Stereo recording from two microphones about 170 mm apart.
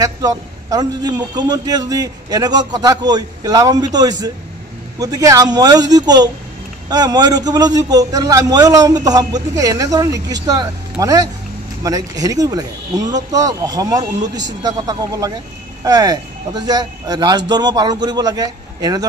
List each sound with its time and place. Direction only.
0.0 s a man's voice: 20° right (ahead or behind)